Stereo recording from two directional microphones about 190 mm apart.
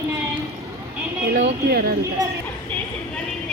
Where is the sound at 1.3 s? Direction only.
60° right (ahead or behind).